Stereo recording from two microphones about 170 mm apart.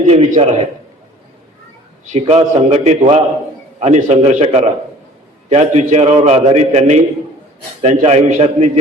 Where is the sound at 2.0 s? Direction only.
45° right (ahead or behind).